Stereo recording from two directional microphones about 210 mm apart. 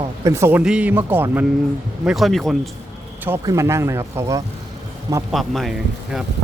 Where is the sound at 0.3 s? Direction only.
10° right (ahead or behind).